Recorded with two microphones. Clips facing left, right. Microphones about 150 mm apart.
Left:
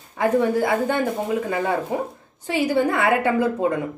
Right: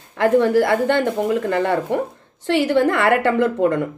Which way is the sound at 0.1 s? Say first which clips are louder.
Right 4 dB; 90° right.